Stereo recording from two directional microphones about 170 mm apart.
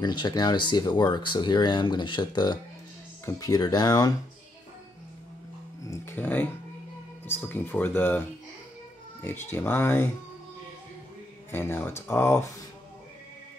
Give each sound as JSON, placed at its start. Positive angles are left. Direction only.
{"t": 0.0, "sound": "speech", "side_deg": 25}
{"t": 5.9, "sound": "speech", "side_deg": 10}
{"t": 11.5, "sound": "speech", "side_deg": 15}